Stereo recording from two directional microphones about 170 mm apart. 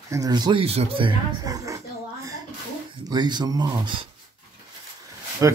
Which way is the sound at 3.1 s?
25° right (ahead or behind).